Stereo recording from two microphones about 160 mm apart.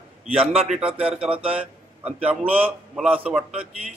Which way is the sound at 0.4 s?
40° right (ahead or behind).